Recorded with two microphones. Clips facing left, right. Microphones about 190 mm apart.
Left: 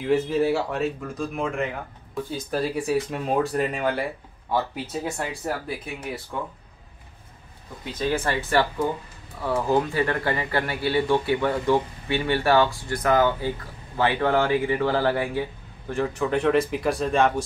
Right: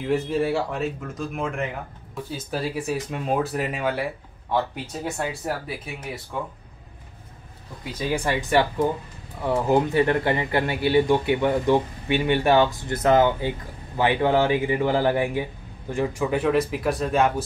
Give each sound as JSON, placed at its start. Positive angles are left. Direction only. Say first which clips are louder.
{"t": 0.0, "sound": "speech", "louder": "left 2 dB", "side_deg": 0}
{"t": 7.8, "sound": "speech", "louder": "even", "side_deg": -10}